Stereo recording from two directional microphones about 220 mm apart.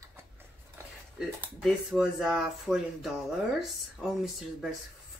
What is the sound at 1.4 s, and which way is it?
Speech, 5° right (ahead or behind).